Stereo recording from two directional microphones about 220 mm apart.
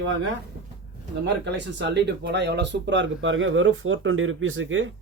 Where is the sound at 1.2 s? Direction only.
50° right (ahead or behind).